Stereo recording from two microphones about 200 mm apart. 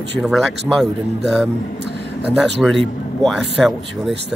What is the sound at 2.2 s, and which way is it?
A man's voice, 5° right (ahead or behind).